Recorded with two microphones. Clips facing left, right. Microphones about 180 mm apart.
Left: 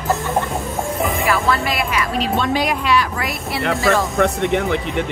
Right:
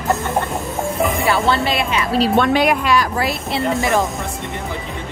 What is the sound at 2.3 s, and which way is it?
Music, 60° right (ahead or behind).